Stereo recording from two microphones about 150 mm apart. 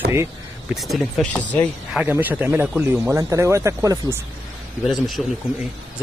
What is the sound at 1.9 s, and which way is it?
Speech, 10° right (ahead or behind).